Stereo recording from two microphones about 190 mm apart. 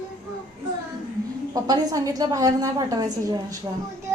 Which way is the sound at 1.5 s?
20° right (ahead or behind).